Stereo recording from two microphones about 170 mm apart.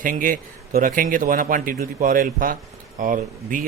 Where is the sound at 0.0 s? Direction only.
50° right (ahead or behind).